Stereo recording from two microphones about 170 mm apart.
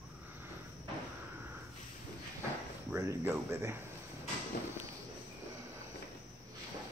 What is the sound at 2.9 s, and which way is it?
Speech, 15° right (ahead or behind).